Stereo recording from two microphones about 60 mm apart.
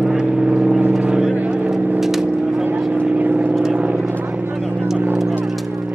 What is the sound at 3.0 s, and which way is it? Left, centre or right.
Vehicle, right.